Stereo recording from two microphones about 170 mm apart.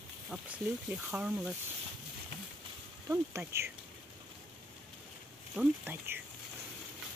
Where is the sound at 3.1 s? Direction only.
15° right (ahead or behind).